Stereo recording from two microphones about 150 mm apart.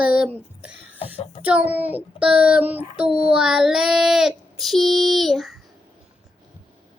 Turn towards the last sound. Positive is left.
turn(degrees=0)  # may be behind; listen again after turning